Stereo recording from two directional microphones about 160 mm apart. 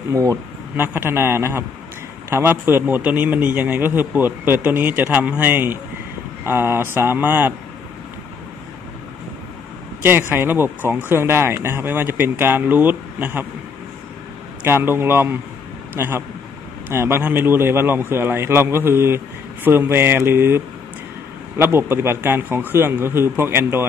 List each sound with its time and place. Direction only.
0.1 s speech: 20° right (ahead or behind)
10.3 s speech: 15° right (ahead or behind)
14.6 s speech: 15° right (ahead or behind)